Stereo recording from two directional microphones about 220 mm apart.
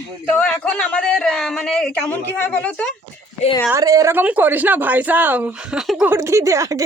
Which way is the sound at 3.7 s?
15° right (ahead or behind).